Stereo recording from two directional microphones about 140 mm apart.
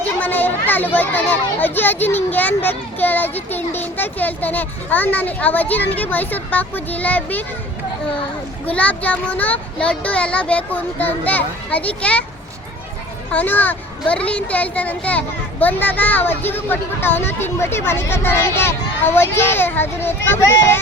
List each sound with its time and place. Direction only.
0.2 s a child's voice: 15° left (ahead or behind)
8.6 s a child's voice: 10° left (ahead or behind)
13.3 s a child's voice: 10° left (ahead or behind)